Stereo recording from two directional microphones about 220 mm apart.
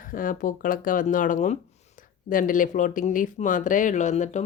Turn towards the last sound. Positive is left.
turn(degrees=35)  # may be behind; listen again after turning